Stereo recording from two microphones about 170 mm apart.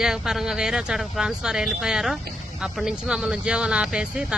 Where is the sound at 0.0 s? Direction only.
5° right (ahead or behind).